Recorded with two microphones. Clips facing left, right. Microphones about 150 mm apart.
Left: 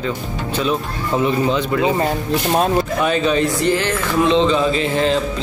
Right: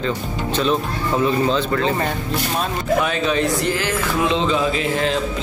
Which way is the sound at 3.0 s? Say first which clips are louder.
Left 3 dB; centre (ahead or behind).